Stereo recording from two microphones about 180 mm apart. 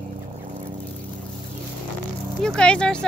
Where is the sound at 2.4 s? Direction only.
5° left (ahead or behind).